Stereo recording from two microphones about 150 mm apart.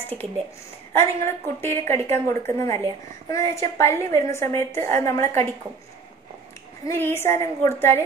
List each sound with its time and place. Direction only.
0.9 s a woman's voice: 15° left (ahead or behind)
6.9 s a woman's voice: 15° left (ahead or behind)